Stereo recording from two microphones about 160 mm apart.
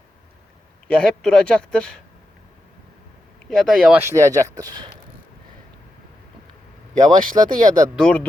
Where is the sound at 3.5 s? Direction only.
Centre (ahead or behind).